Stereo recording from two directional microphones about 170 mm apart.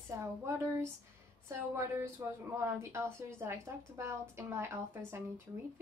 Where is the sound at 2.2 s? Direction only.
15° right (ahead or behind).